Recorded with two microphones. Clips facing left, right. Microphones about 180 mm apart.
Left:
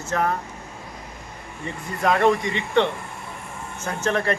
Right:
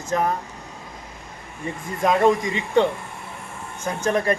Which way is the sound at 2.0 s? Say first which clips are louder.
Right 1 dB; 20° right (ahead or behind).